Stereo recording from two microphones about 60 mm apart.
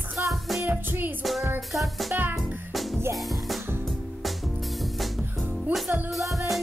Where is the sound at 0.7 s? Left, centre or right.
Right.